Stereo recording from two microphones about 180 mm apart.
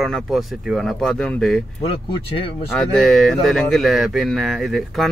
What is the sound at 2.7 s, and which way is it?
Speech, centre (ahead or behind).